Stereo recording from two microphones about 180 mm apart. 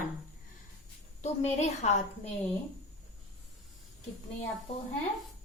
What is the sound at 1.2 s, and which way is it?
Speech, 40° left (ahead or behind).